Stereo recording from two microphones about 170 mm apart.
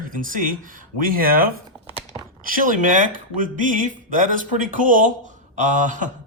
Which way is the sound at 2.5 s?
50° right (ahead or behind).